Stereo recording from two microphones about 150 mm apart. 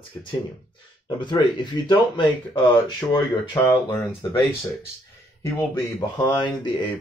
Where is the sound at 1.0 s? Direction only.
30° left (ahead or behind).